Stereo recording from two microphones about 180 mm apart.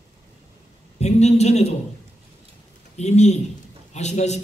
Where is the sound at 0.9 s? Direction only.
35° left (ahead or behind).